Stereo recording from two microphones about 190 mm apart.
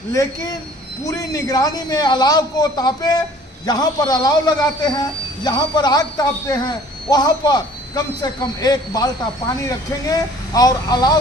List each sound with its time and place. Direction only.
0.1 s a man's voice: 15° left (ahead or behind)